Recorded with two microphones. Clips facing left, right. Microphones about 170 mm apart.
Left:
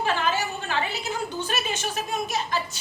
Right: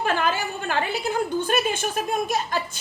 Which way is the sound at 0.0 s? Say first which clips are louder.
Right 1 dB; 50° right (ahead or behind).